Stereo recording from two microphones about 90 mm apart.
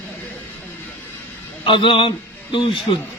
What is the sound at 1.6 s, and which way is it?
A man's voice, 70° left (ahead or behind).